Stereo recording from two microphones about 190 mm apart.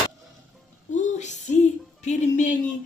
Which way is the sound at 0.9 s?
40° left (ahead or behind).